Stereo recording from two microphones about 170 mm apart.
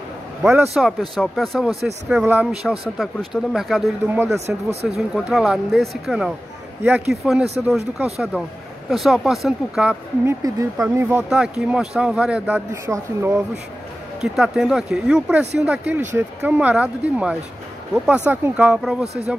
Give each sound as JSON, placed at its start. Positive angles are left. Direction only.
{"t": 0.7, "sound": "speech", "side_deg": 0}
{"t": 10.2, "sound": "speech", "side_deg": -20}
{"t": 14.2, "sound": "speech", "side_deg": -5}